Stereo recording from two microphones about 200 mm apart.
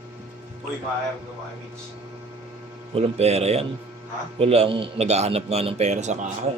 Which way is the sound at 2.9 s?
30° right (ahead or behind).